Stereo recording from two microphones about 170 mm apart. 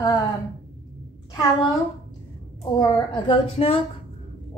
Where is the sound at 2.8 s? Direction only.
30° left (ahead or behind).